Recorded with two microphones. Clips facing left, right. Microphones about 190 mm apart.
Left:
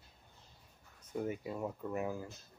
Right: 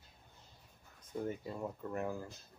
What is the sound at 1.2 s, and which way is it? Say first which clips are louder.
Speech: left 1 dB; 10° left (ahead or behind).